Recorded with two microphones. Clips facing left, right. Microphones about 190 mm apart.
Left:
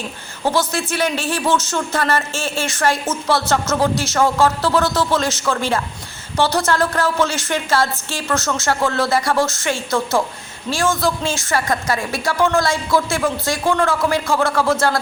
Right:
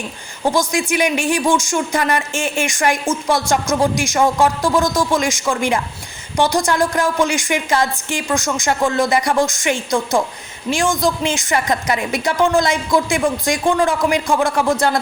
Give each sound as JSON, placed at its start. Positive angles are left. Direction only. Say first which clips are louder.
{"t": 0.4, "sound": "speech", "louder": "right 2 dB", "side_deg": -15}